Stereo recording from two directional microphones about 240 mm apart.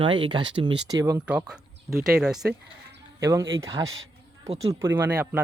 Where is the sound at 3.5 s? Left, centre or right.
Right.